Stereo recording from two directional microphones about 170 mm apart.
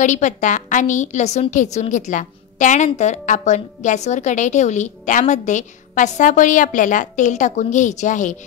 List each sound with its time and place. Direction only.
0.0 s a woman's voice: 45° left (ahead or behind)